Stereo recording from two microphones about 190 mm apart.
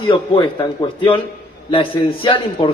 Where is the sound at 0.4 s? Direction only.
25° left (ahead or behind).